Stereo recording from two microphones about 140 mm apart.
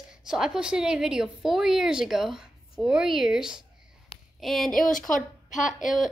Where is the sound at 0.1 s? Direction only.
5° right (ahead or behind).